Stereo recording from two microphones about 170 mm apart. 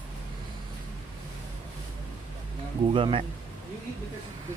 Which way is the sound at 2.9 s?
30° right (ahead or behind).